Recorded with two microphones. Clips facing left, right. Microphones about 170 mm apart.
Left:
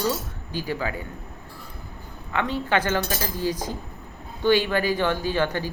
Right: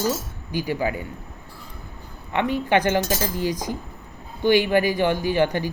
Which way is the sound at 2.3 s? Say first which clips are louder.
Right 3 dB; 15° right (ahead or behind).